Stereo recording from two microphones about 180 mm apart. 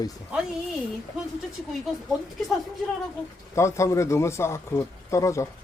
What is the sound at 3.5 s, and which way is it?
Speech, 15° left (ahead or behind).